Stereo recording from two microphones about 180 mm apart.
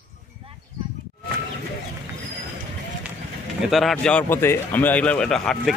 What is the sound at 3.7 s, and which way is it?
Speech, centre (ahead or behind).